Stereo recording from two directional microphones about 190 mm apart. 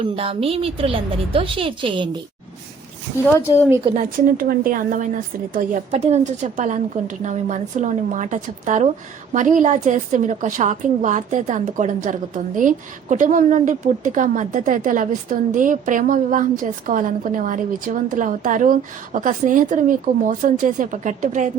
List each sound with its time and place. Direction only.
0.0 s a woman's voice: 30° right (ahead or behind)
3.2 s speech: 10° left (ahead or behind)
3.9 s a woman's voice: 45° right (ahead or behind)